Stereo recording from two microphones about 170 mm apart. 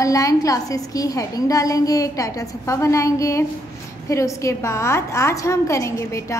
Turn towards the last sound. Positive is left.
turn(degrees=20)  # may be behind; listen again after turning